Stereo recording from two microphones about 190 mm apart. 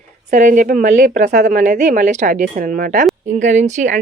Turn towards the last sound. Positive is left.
turn(degrees=-40)  # may be behind; listen again after turning